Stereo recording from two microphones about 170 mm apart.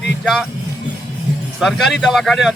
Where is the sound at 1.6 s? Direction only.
Centre (ahead or behind).